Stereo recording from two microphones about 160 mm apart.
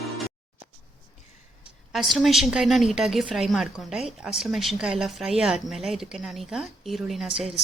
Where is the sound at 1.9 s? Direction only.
Centre (ahead or behind).